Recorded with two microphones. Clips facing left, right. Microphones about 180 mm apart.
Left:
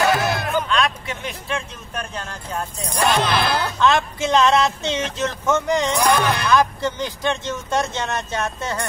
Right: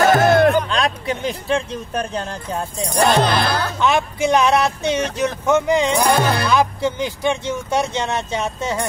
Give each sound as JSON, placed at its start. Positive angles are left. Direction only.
{"t": 0.0, "sound": "music", "side_deg": -45}
{"t": 0.7, "sound": "speech", "side_deg": -35}
{"t": 3.4, "sound": "speech", "side_deg": 15}
{"t": 3.8, "sound": "speech", "side_deg": -15}
{"t": 6.1, "sound": "speech", "side_deg": -35}
{"t": 6.5, "sound": "speech", "side_deg": -15}